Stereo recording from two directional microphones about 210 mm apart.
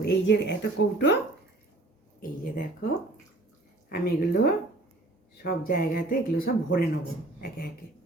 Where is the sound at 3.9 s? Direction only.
45° left (ahead or behind).